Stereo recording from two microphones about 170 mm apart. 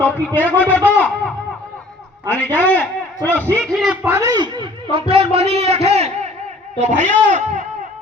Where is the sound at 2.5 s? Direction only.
10° left (ahead or behind); by 4.7 s 25° right (ahead or behind).